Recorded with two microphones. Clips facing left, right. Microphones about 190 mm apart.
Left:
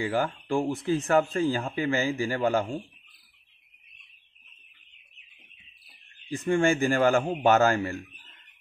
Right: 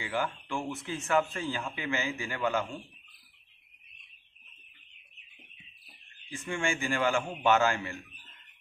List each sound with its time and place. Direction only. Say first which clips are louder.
0.0 s speech: left 6 dB; 35° left (ahead or behind)
6.3 s speech: left 9 dB; 40° left (ahead or behind)